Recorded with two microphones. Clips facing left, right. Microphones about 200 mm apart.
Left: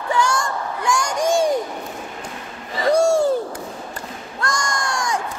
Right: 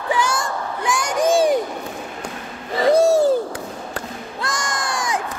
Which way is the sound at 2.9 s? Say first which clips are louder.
Right 2 dB; 5° right (ahead or behind).